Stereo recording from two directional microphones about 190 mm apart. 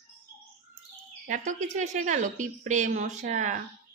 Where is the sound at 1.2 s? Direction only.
40° right (ahead or behind).